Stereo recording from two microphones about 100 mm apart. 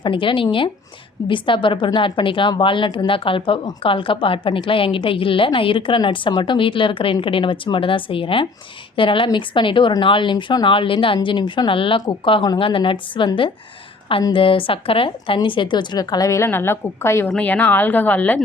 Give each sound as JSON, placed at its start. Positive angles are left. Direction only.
{"t": 0.0, "sound": "a woman's voice", "side_deg": 55}
{"t": 16.5, "sound": "a woman's voice", "side_deg": 25}
{"t": 17.2, "sound": "speech", "side_deg": 15}